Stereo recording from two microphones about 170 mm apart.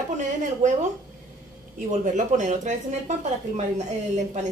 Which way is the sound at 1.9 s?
45° right (ahead or behind).